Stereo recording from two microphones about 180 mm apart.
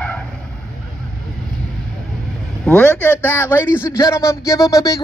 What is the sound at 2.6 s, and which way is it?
A man's voice, 10° left (ahead or behind).